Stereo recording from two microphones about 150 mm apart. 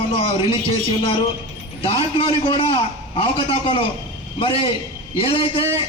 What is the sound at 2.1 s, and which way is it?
A man's voice, 35° left (ahead or behind).